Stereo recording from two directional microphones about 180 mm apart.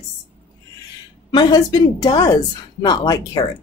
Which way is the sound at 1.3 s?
25° left (ahead or behind).